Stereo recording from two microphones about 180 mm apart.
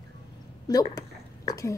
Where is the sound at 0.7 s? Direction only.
20° left (ahead or behind).